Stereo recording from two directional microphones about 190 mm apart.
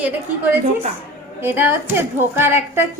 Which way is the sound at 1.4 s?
10° right (ahead or behind).